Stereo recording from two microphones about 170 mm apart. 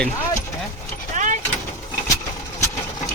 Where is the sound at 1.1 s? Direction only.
50° right (ahead or behind).